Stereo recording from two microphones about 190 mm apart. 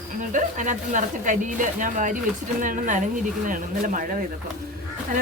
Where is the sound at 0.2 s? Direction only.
40° right (ahead or behind).